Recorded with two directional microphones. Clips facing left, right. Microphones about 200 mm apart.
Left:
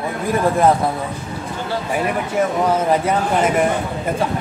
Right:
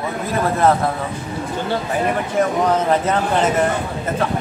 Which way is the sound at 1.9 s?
10° left (ahead or behind).